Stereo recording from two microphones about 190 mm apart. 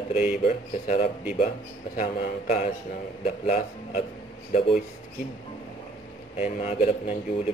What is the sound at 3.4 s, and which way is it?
Speech, 35° left (ahead or behind).